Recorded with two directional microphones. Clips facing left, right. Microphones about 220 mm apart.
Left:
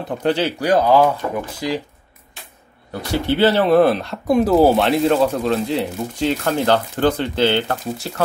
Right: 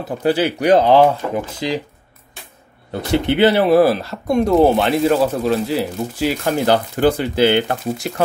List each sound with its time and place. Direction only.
0.2 s speech: 10° right (ahead or behind)
0.6 s speech: 25° right (ahead or behind)
2.9 s speech: 20° right (ahead or behind)